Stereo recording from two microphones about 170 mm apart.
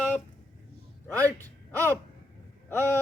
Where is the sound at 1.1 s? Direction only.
20° right (ahead or behind).